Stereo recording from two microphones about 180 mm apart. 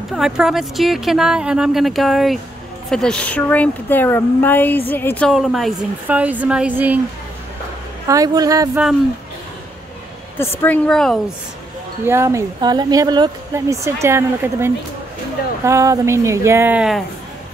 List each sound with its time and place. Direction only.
0.1 s speech: 5° right (ahead or behind)
8.1 s a woman's voice: 20° right (ahead or behind)
10.6 s speech: 5° left (ahead or behind)
12.0 s speech: 15° right (ahead or behind)